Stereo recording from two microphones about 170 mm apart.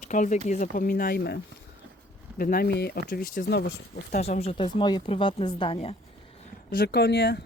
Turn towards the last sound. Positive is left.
turn(degrees=70)  # may be behind; listen again after turning